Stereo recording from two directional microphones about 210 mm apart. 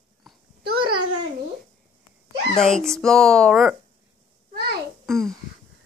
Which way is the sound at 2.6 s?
Centre (ahead or behind).